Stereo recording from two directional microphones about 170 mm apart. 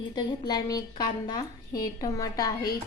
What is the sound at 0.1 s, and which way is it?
A woman's voice, 25° left (ahead or behind).